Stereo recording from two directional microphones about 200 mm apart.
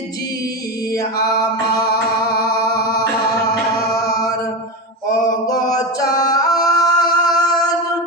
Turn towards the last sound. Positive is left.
turn(degrees=20)  # may be behind; listen again after turning